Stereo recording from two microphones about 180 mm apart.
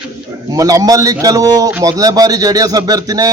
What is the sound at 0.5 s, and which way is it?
A man's voice, 20° right (ahead or behind).